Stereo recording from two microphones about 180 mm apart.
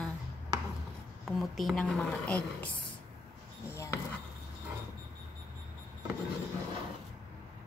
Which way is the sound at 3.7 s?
15° left (ahead or behind).